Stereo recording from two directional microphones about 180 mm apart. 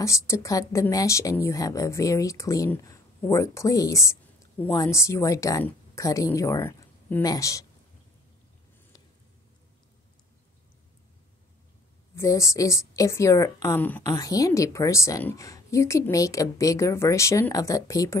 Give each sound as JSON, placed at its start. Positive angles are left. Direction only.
{"t": 0.0, "sound": "speech", "side_deg": 15}
{"t": 12.2, "sound": "speech", "side_deg": 15}